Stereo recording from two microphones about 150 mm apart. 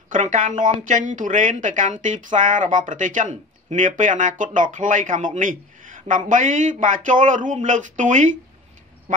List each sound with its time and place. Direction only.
0.1 s speech: 55° right (ahead or behind)